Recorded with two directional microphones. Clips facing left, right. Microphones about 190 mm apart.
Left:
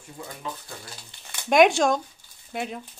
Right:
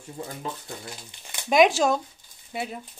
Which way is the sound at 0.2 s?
30° right (ahead or behind).